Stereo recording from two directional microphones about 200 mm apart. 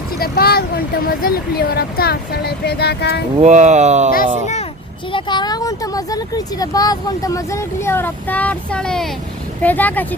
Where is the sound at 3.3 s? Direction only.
35° right (ahead or behind).